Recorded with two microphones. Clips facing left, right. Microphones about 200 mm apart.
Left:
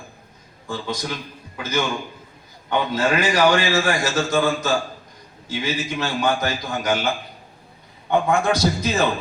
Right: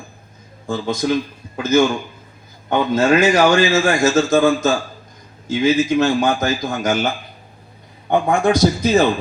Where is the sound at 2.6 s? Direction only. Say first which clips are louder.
Right 5 dB; 45° right (ahead or behind).